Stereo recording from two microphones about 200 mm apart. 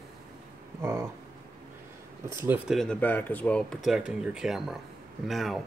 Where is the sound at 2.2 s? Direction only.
10° right (ahead or behind).